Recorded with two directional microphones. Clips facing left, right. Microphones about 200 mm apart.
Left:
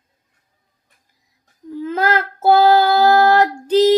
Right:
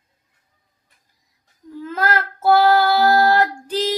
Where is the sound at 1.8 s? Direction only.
20° left (ahead or behind).